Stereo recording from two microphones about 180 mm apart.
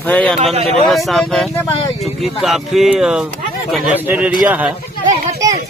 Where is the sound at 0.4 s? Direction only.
35° right (ahead or behind).